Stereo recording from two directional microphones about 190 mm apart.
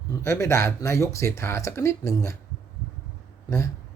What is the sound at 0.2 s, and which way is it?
Speech, 15° left (ahead or behind).